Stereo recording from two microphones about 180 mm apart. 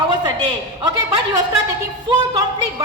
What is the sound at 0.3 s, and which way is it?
A man's voice, 25° right (ahead or behind).